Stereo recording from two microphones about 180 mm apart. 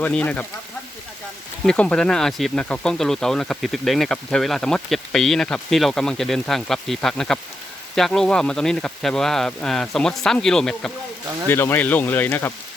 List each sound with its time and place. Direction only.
0.0 s speech: 10° left (ahead or behind)
1.6 s speech: 5° left (ahead or behind)